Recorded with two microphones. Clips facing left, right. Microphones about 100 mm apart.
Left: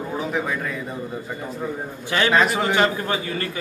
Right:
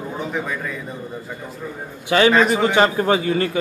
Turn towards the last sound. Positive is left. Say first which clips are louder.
# right 8 dB
turn(degrees=-30)  # may be behind; listen again after turning